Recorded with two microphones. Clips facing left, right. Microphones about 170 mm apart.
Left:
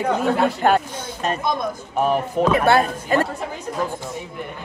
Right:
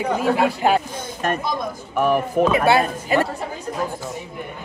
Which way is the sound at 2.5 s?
5° right (ahead or behind).